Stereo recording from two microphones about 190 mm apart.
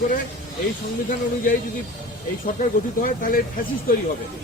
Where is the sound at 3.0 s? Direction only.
45° left (ahead or behind).